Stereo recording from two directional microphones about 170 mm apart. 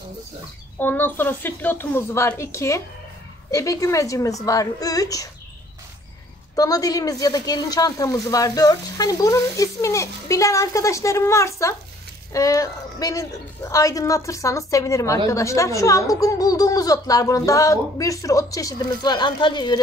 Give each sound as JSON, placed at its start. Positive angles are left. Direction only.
{"t": 0.7, "sound": "a woman's voice", "side_deg": 10}
{"t": 6.5, "sound": "a woman's voice", "side_deg": 20}